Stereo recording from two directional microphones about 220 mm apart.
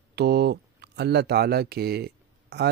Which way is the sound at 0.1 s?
50° right (ahead or behind).